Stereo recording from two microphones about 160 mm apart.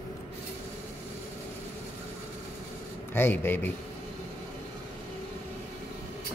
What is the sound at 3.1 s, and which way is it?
Speech, 15° left (ahead or behind).